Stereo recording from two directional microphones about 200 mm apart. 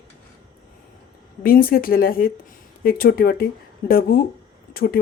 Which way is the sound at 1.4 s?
45° left (ahead or behind).